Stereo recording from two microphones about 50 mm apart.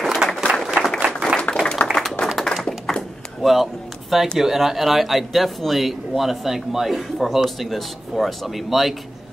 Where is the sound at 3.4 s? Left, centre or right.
Centre.